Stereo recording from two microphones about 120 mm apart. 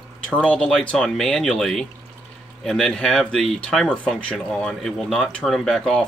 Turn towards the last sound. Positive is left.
turn(degrees=5)  # may be behind; listen again after turning